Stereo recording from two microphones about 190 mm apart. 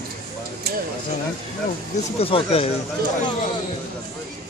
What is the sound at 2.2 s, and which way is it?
Speech, 30° left (ahead or behind).